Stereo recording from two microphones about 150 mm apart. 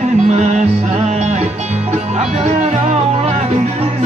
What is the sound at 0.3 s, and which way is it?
Music, 50° right (ahead or behind).